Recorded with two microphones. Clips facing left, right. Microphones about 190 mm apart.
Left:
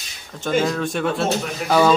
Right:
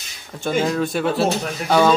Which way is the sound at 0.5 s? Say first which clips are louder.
Even; 5° right (ahead or behind).